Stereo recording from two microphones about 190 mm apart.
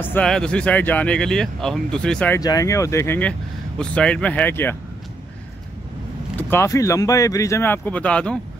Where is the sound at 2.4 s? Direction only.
20° left (ahead or behind).